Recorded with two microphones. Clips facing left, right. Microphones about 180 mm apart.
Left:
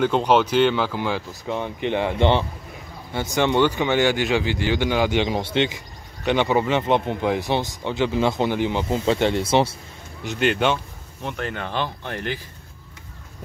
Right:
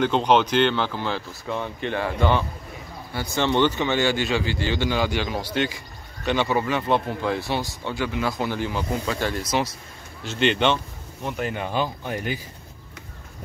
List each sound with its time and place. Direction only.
0.0 s speech: 10° left (ahead or behind); by 9.8 s 30° left (ahead or behind)
10.2 s speech: 10° left (ahead or behind)
11.2 s speech: 10° right (ahead or behind)